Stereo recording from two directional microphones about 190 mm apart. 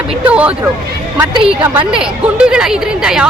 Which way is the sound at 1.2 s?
25° right (ahead or behind).